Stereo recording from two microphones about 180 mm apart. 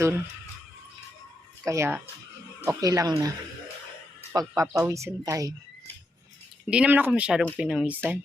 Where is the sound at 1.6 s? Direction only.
15° right (ahead or behind).